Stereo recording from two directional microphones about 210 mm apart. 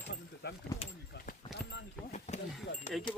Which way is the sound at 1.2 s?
50° left (ahead or behind).